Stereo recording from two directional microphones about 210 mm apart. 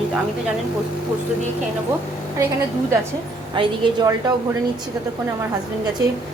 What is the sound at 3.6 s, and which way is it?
Speech, 20° right (ahead or behind).